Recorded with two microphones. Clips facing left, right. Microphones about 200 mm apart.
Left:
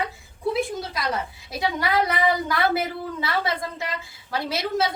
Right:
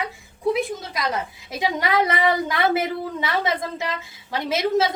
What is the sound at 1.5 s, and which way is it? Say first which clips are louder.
A woman's voice: right 2 dB; 20° right (ahead or behind).